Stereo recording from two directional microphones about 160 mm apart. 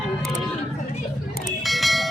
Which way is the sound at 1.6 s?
Centre (ahead or behind).